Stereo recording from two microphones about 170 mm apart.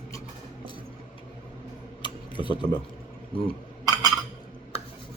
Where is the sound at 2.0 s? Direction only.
25° left (ahead or behind).